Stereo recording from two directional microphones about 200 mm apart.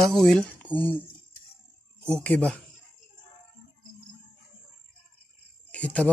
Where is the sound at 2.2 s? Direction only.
5° left (ahead or behind).